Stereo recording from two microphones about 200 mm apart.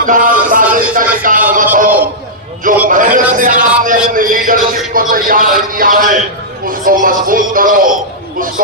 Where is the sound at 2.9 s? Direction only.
40° right (ahead or behind).